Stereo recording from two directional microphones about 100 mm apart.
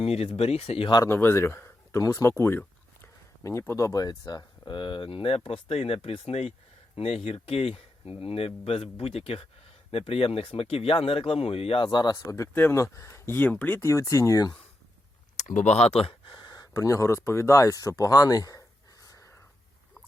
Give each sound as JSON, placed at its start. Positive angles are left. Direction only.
{"t": 0.0, "sound": "speech", "side_deg": 85}
{"t": 1.0, "sound": "speech", "side_deg": 25}
{"t": 11.9, "sound": "speech", "side_deg": 45}
{"t": 12.5, "sound": "speech", "side_deg": 25}
{"t": 13.9, "sound": "speech", "side_deg": 35}
{"t": 15.7, "sound": "speech", "side_deg": 90}
{"t": 16.3, "sound": "speech", "side_deg": 45}
{"t": 19.0, "sound": "a sound", "side_deg": 35}